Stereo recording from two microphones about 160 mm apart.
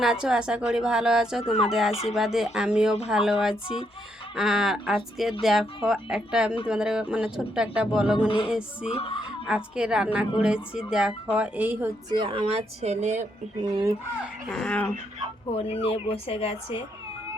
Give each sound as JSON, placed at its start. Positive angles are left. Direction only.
{"t": 0.0, "sound": "speech", "side_deg": -5}
{"t": 8.9, "sound": "speech", "side_deg": 35}
{"t": 9.5, "sound": "speech", "side_deg": -5}
{"t": 12.1, "sound": "speech", "side_deg": -30}
{"t": 13.6, "sound": "speech", "side_deg": -25}
{"t": 14.2, "sound": "speech", "side_deg": 0}
{"t": 15.5, "sound": "speech", "side_deg": 35}